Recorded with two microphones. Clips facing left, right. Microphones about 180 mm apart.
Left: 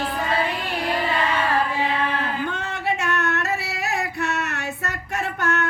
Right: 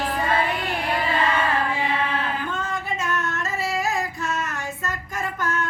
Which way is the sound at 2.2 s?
70° left (ahead or behind).